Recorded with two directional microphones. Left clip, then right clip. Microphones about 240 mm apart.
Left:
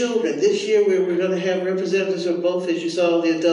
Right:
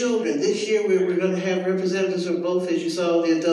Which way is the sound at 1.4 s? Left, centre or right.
Centre.